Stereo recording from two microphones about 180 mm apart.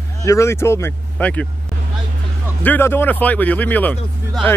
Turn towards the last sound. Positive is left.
turn(degrees=10)  # may be behind; listen again after turning